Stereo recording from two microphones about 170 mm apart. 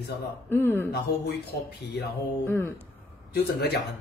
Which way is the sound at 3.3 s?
70° left (ahead or behind).